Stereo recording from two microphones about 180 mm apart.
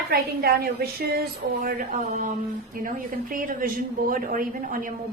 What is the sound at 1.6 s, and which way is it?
A woman's voice, 50° right (ahead or behind).